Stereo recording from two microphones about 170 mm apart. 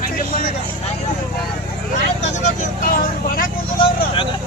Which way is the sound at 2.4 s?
50° left (ahead or behind).